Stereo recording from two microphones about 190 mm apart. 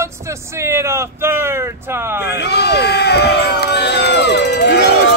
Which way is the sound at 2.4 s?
60° left (ahead or behind).